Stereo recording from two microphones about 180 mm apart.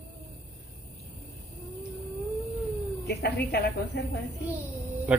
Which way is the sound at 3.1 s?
65° left (ahead or behind).